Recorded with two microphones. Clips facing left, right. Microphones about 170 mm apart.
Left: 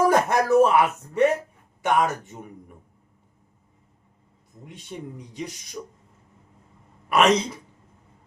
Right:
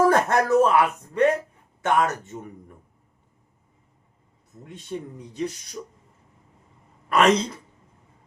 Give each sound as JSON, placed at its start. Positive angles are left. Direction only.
{"t": 0.1, "sound": "speech", "side_deg": 15}
{"t": 4.6, "sound": "speech", "side_deg": 10}
{"t": 7.1, "sound": "a woman's voice", "side_deg": 5}